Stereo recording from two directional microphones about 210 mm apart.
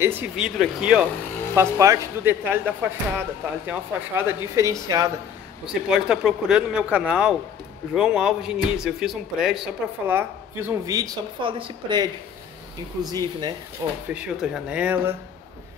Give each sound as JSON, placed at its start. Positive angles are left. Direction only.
{"t": 0.0, "sound": "speech", "side_deg": -5}
{"t": 5.7, "sound": "speech", "side_deg": -5}